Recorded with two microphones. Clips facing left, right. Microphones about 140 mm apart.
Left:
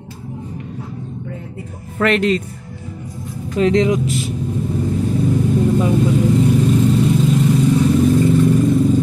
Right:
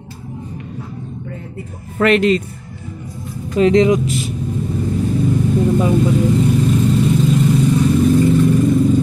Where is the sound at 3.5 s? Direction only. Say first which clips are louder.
Right 3 dB; 15° right (ahead or behind).